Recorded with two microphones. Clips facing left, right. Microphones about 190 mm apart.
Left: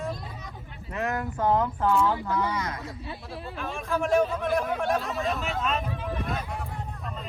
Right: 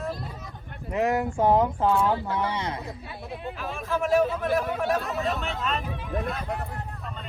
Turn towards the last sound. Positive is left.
turn(degrees=0)  # may be behind; listen again after turning